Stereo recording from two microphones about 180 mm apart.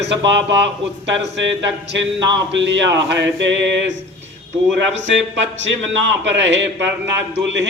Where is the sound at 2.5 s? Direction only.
85° right.